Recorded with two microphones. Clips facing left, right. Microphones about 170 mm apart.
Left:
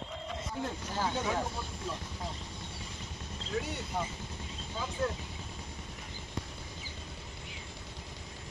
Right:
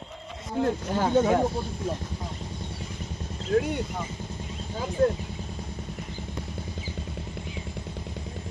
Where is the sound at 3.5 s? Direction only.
55° right (ahead or behind).